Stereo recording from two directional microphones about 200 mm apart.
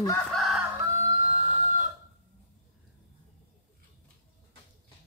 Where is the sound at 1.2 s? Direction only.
30° right (ahead or behind).